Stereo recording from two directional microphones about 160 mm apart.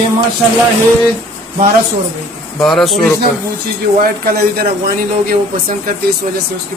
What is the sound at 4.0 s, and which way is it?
Speech, 65° right (ahead or behind).